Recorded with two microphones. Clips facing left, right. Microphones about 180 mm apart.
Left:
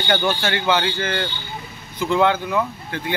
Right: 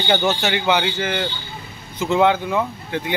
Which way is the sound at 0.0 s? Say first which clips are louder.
Right 1 dB; 20° right (ahead or behind).